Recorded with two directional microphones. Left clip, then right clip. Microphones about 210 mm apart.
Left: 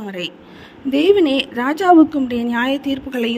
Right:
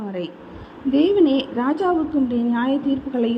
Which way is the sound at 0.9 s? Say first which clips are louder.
Left 3 dB; 50° left (ahead or behind).